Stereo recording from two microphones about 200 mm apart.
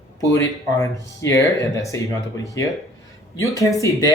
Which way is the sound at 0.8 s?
15° left (ahead or behind).